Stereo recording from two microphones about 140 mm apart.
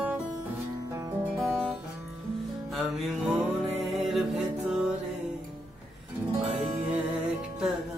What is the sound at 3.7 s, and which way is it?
Music, centre (ahead or behind).